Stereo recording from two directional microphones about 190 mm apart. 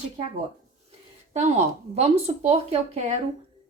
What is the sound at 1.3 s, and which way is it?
Speech, 35° right (ahead or behind).